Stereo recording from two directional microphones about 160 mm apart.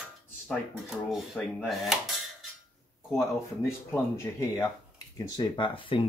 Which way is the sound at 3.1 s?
15° left (ahead or behind).